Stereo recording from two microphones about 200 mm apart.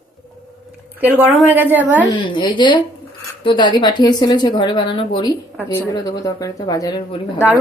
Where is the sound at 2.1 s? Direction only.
25° left (ahead or behind).